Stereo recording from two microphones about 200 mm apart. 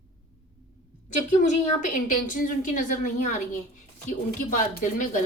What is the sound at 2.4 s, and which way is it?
A woman's voice, 40° left (ahead or behind).